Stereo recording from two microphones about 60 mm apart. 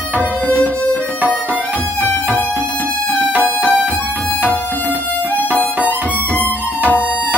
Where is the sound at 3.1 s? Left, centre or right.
Left.